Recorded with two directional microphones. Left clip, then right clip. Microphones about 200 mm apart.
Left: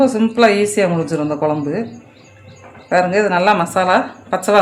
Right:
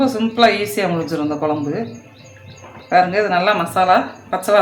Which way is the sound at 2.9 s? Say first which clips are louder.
Even; 40° left (ahead or behind).